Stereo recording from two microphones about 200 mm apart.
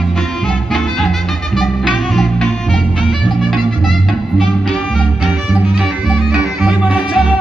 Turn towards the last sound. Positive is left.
turn(degrees=-5)  # may be behind; listen again after turning